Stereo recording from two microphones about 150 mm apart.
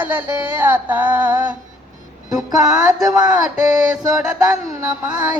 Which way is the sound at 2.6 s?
5° right (ahead or behind).